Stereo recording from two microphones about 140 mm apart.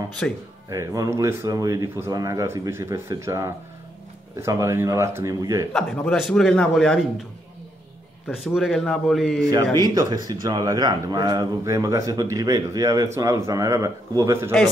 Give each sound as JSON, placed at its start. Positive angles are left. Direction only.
{"t": 0.2, "sound": "a man's voice", "side_deg": 5}
{"t": 0.7, "sound": "a man's voice", "side_deg": -25}
{"t": 5.7, "sound": "a man's voice", "side_deg": 5}
{"t": 8.5, "sound": "a man's voice", "side_deg": 0}
{"t": 9.5, "sound": "a man's voice", "side_deg": -30}